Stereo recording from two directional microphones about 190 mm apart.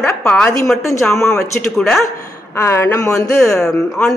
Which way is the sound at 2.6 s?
15° left (ahead or behind).